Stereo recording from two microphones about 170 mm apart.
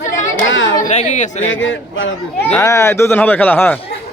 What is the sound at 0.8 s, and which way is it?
Speech, 45° left (ahead or behind).